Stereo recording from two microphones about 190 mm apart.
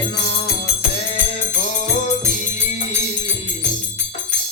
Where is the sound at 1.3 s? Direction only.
35° left (ahead or behind).